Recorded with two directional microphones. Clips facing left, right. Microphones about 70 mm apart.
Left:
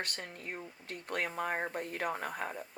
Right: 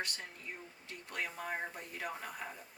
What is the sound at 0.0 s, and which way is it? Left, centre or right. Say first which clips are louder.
Speech: left 2 dB; left.